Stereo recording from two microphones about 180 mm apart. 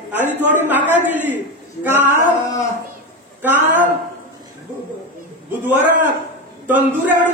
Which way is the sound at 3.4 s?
10° right (ahead or behind).